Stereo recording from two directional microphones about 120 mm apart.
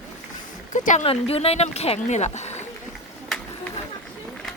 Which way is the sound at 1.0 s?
55° left (ahead or behind).